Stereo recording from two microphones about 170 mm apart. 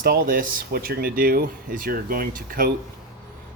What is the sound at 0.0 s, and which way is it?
Speech, 65° right (ahead or behind).